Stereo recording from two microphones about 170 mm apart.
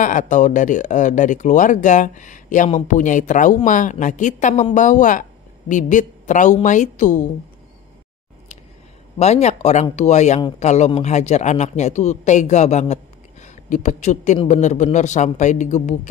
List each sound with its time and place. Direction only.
0.0 s speech: 50° left (ahead or behind)
9.2 s speech: 40° left (ahead or behind)